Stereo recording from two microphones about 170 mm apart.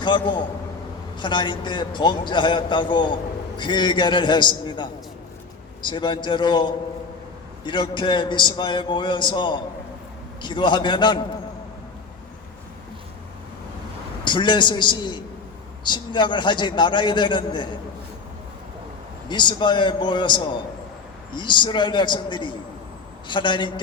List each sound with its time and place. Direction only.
0.0 s a man's voice: 25° left (ahead or behind)
14.3 s a man's voice: 25° left (ahead or behind)
19.3 s a man's voice: 25° left (ahead or behind)